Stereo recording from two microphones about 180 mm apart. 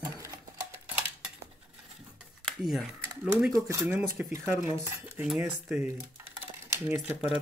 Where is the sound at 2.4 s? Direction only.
Centre (ahead or behind).